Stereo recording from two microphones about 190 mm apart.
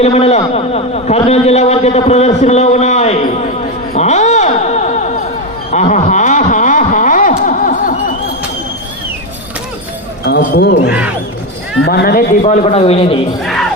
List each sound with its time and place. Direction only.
0.0 s a man's voice: 35° left (ahead or behind)
3.9 s a sound: 35° left (ahead or behind)
10.2 s a man's voice: 60° left (ahead or behind); by 13.1 s 30° left (ahead or behind)
13.4 s music: centre (ahead or behind)